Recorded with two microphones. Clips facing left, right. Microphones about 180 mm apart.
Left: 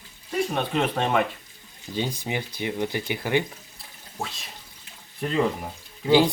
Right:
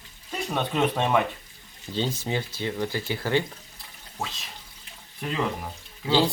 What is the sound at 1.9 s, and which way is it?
Speech, 15° left (ahead or behind).